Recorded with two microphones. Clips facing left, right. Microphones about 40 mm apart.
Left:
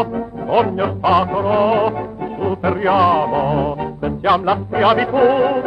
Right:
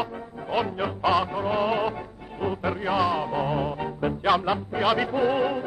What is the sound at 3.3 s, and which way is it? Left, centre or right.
Music, centre.